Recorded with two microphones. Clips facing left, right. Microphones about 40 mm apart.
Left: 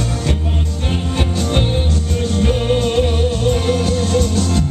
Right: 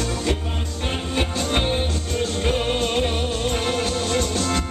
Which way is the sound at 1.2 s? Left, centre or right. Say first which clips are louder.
Left 3 dB; centre.